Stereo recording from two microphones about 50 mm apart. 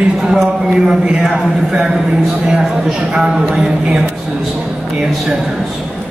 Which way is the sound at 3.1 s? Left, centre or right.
Centre.